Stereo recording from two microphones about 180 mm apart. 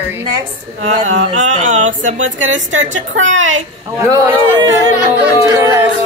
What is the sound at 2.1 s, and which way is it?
A woman's voice, 90° right.